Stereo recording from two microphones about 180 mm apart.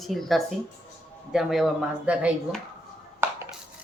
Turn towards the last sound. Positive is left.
turn(degrees=-15)  # may be behind; listen again after turning